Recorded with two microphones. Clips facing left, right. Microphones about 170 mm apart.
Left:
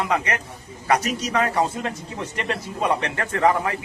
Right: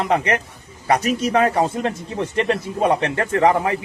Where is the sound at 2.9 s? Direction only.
25° right (ahead or behind).